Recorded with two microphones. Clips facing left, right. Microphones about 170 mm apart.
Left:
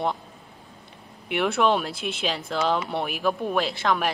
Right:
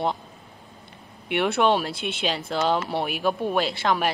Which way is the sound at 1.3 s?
Centre (ahead or behind).